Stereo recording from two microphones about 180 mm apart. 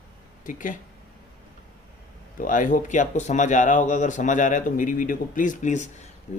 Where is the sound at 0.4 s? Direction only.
45° left (ahead or behind).